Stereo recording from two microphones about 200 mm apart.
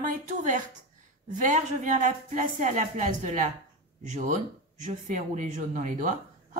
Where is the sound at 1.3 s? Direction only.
40° right (ahead or behind).